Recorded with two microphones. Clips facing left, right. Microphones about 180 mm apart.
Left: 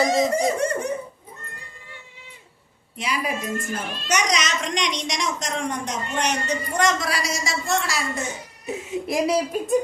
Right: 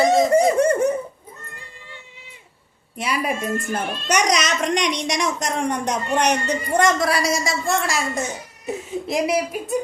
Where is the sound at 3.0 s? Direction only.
55° right (ahead or behind).